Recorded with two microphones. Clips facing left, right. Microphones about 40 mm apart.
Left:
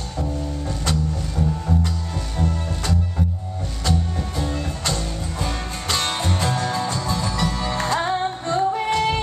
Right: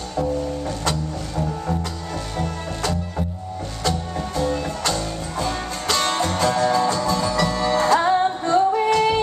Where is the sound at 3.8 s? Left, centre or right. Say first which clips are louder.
Right 1 dB; centre.